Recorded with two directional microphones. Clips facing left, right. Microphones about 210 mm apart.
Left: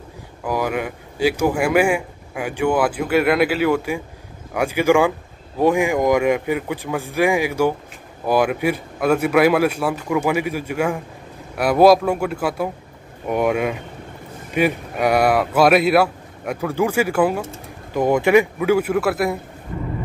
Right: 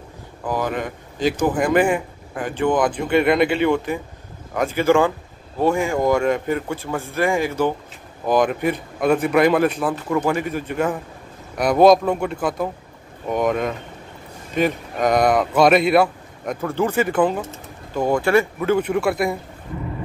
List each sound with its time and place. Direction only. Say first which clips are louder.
0.5 s speech: left 1 dB; 10° left (ahead or behind)
18.6 s speech: left 2 dB; 5° left (ahead or behind)